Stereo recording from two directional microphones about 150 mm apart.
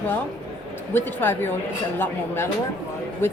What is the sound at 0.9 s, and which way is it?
A woman's voice, 15° left (ahead or behind).